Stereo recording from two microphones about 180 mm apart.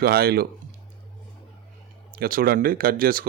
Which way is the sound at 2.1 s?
50° right (ahead or behind).